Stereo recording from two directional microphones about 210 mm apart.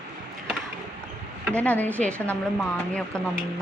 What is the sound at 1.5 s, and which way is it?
Speech, 5° left (ahead or behind).